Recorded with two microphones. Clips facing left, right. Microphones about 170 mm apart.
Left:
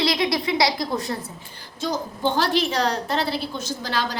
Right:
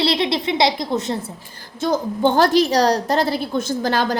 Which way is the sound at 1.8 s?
55° right (ahead or behind).